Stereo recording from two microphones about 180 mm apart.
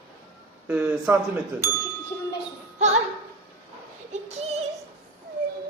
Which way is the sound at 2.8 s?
40° right (ahead or behind).